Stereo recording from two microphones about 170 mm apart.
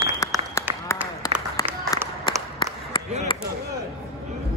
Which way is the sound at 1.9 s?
20° left (ahead or behind).